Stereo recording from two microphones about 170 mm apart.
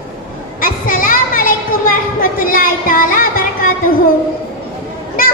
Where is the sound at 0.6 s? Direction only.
55° left (ahead or behind).